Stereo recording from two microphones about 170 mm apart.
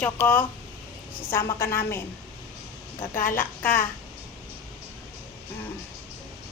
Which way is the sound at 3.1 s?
55° left (ahead or behind).